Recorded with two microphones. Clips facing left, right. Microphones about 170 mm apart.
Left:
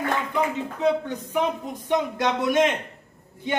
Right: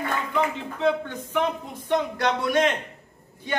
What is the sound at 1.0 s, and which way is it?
A man's voice, 15° left (ahead or behind).